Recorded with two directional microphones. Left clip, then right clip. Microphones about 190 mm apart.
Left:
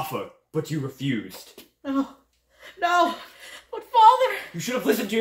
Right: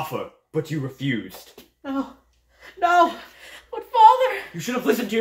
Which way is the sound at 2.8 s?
15° right (ahead or behind).